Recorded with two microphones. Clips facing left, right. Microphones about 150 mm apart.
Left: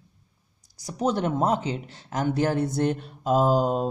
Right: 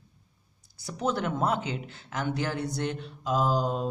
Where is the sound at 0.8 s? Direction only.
35° left (ahead or behind).